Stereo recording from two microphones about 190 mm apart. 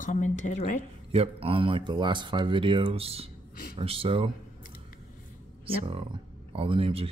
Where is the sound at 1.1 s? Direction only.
30° right (ahead or behind).